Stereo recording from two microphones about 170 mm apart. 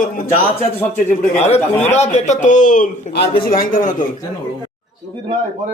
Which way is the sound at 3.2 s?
65° left (ahead or behind).